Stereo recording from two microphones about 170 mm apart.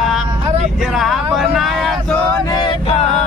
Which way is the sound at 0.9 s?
Centre (ahead or behind).